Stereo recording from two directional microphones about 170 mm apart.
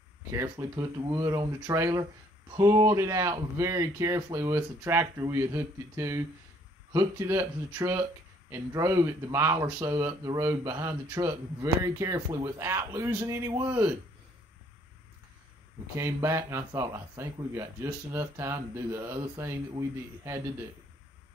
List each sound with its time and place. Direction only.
0.3 s speech: 15° right (ahead or behind)
16.0 s speech: 15° right (ahead or behind)